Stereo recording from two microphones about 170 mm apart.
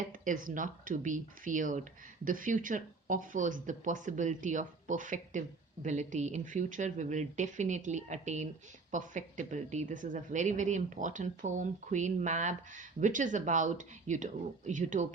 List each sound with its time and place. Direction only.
0.0 s a woman's voice: 55° right (ahead or behind)